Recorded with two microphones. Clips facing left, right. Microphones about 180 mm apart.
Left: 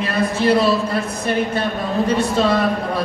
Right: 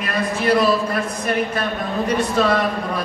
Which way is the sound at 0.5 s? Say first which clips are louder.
Right 2 dB; 25° left (ahead or behind).